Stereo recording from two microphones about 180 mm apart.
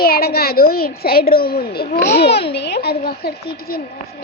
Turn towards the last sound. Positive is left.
turn(degrees=60)  # may be behind; listen again after turning